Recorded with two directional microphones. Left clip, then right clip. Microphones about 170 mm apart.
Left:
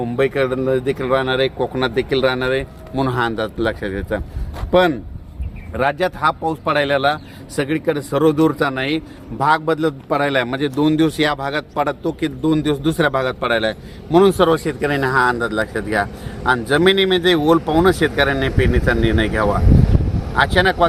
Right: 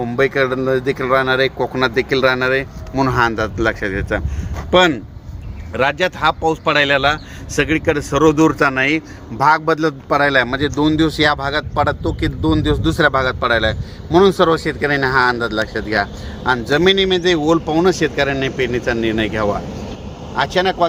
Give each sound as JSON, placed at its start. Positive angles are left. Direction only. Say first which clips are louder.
{"t": 0.0, "sound": "speech", "louder": "right 2 dB", "side_deg": -15}
{"t": 4.7, "sound": "a man's voice", "louder": "right 2 dB", "side_deg": -60}